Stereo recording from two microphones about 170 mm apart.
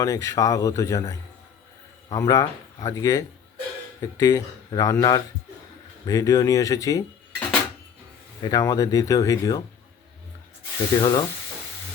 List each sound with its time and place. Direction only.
0.0 s speech: 20° left (ahead or behind)
11.0 s speech: 25° left (ahead or behind)